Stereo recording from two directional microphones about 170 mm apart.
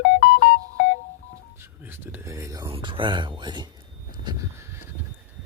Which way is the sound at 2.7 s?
30° right (ahead or behind).